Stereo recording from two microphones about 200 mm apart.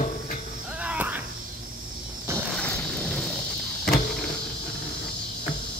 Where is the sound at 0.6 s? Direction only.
5° right (ahead or behind).